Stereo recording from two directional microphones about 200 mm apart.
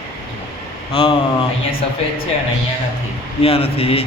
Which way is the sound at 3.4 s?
30° left (ahead or behind).